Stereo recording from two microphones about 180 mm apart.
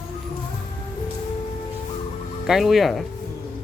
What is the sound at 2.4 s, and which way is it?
Speech, centre (ahead or behind).